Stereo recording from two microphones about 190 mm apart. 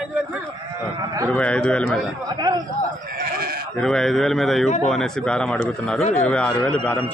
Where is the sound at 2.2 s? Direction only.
20° right (ahead or behind).